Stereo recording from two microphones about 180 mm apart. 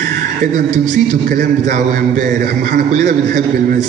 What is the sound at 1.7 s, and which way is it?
A man's voice, 45° right (ahead or behind).